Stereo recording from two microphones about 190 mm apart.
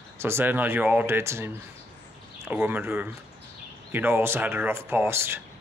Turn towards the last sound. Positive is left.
turn(degrees=-10)  # may be behind; listen again after turning